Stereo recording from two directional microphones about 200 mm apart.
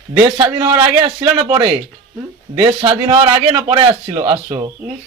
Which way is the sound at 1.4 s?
30° right (ahead or behind).